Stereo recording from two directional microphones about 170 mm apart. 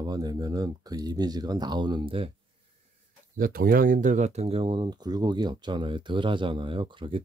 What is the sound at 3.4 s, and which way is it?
Speech, 60° right (ahead or behind).